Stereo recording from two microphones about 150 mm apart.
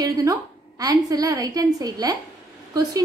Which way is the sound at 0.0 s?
25° right (ahead or behind).